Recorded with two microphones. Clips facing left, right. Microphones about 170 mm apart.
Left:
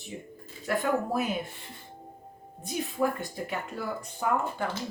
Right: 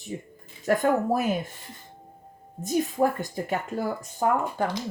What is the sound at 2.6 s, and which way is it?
Speech, 40° right (ahead or behind).